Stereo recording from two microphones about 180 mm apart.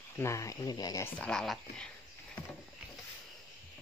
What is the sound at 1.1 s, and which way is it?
Speech, 5° left (ahead or behind).